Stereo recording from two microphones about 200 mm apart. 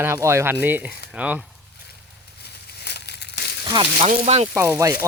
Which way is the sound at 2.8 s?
55° left (ahead or behind).